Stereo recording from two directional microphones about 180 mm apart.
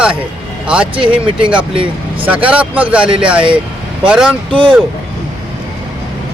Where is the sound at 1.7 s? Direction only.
30° right (ahead or behind).